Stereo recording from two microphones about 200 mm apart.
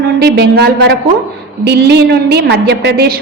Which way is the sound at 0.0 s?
55° right (ahead or behind).